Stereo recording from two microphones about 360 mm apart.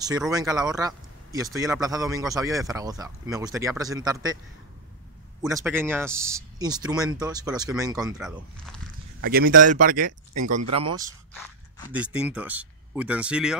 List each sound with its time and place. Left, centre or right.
0.0 s speech: centre
5.4 s speech: centre
9.2 s speech: right
10.6 s speech: right
11.9 s speech: centre